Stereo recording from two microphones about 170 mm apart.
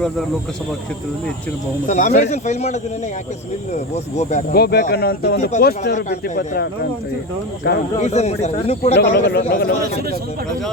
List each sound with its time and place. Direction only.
1.9 s speech: 45° left (ahead or behind)
3.9 s speech: 45° left (ahead or behind)
4.5 s speech: 70° left (ahead or behind)
7.9 s speech: 40° left (ahead or behind)
9.0 s speech: 75° left (ahead or behind)
9.5 s speech: 60° left (ahead or behind)